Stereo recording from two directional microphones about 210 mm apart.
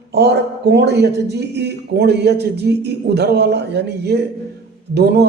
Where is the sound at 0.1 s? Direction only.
55° right (ahead or behind).